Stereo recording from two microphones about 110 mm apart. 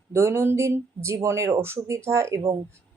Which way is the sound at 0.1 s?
25° right (ahead or behind).